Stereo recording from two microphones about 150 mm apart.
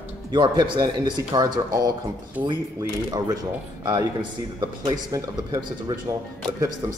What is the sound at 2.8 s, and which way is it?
Speech, 25° right (ahead or behind).